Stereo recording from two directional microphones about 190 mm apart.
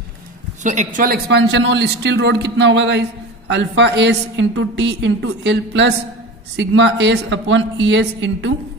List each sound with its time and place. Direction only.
0.7 s a man's voice: 40° right (ahead or behind); by 8.5 s 70° right (ahead or behind)